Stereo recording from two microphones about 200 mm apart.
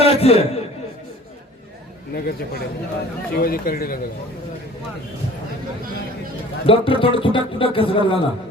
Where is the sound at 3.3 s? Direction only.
50° left (ahead or behind).